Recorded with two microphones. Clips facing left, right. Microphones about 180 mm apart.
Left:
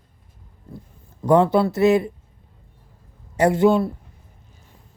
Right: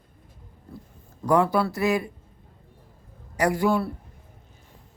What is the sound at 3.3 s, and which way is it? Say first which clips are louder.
Speech: left 6 dB; 25° left (ahead or behind).